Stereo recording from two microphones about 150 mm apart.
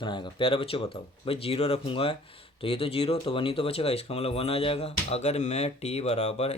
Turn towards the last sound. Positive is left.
turn(degrees=45)  # may be behind; listen again after turning